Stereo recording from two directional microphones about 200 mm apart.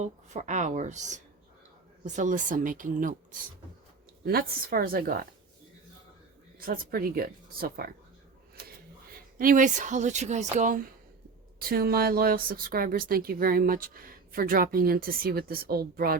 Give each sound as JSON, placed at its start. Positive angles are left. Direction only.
{"t": 0.0, "sound": "speech", "side_deg": -35}
{"t": 4.3, "sound": "speech", "side_deg": -50}
{"t": 6.6, "sound": "speech", "side_deg": -45}
{"t": 9.1, "sound": "speech", "side_deg": -45}